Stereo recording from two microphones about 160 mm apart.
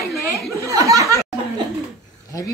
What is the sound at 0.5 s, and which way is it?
Chuckle, 20° right (ahead or behind).